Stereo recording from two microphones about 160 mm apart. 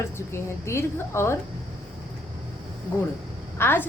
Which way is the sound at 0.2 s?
15° left (ahead or behind).